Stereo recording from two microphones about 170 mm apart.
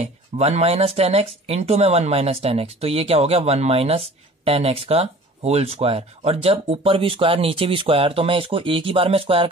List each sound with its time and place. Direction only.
0.0 s speech: 40° right (ahead or behind)